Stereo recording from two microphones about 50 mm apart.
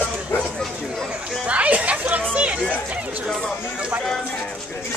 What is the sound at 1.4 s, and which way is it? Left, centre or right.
Speech, right.